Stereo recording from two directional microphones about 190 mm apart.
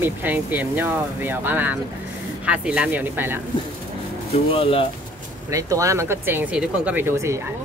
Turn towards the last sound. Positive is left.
turn(degrees=-15)  # may be behind; listen again after turning